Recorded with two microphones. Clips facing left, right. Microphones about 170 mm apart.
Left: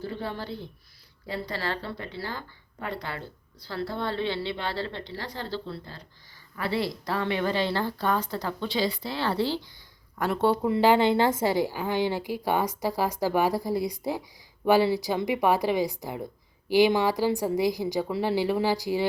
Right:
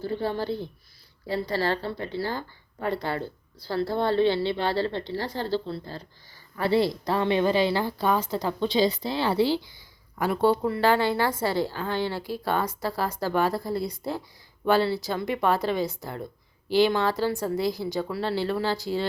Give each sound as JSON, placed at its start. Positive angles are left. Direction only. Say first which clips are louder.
{"t": 0.2, "sound": "a woman's voice", "louder": "right 6 dB", "side_deg": -35}
{"t": 1.5, "sound": "a woman's voice", "louder": "right 7 dB", "side_deg": -35}
{"t": 10.7, "sound": "speech", "louder": "left 2 dB", "side_deg": 15}